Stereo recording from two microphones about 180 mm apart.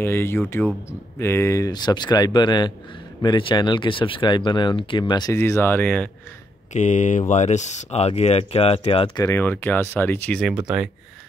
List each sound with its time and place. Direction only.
0.0 s speech: 15° left (ahead or behind)
6.7 s speech: 40° left (ahead or behind)
9.2 s speech: 10° left (ahead or behind)